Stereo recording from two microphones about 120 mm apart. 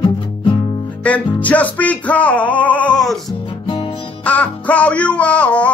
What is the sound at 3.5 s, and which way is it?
Music, 50° left (ahead or behind).